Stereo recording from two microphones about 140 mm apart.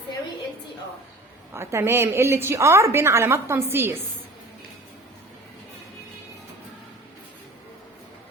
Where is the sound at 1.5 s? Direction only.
15° right (ahead or behind).